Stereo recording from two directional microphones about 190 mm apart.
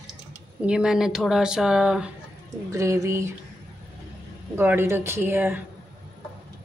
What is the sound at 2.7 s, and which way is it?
Speech, 15° right (ahead or behind).